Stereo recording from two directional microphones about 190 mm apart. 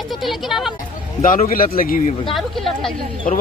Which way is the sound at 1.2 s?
45° left (ahead or behind).